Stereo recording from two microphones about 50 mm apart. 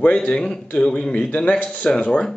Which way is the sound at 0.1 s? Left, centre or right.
Centre.